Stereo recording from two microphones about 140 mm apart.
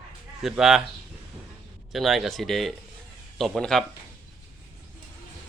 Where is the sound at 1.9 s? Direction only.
Centre (ahead or behind).